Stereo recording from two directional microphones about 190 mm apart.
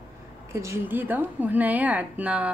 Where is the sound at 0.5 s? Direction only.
15° right (ahead or behind).